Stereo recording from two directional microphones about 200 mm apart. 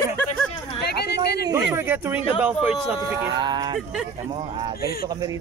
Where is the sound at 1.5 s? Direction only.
15° right (ahead or behind).